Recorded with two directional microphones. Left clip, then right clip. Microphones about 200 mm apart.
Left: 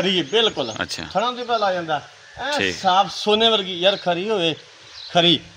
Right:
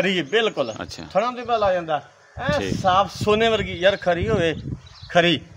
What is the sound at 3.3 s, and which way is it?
Speech, 35° right (ahead or behind).